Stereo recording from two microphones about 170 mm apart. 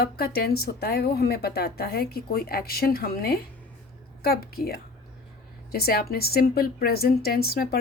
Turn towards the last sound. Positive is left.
turn(degrees=65)  # may be behind; listen again after turning